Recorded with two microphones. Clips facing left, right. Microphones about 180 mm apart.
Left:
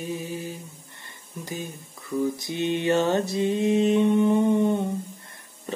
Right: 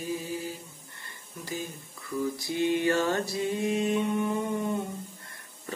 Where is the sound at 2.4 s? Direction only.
20° left (ahead or behind).